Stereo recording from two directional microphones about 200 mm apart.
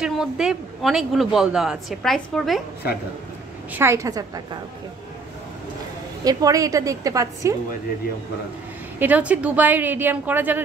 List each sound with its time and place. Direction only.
0.0 s a man's voice: 5° right (ahead or behind)
3.7 s a woman's voice: 15° right (ahead or behind)
6.2 s a woman's voice: 15° right (ahead or behind)
9.0 s a woman's voice: 5° right (ahead or behind)